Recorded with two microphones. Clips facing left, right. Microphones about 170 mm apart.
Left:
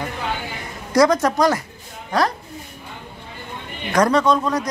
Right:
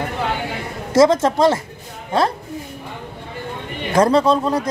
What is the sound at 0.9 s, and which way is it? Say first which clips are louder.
Speech: right 2 dB; 25° right (ahead or behind).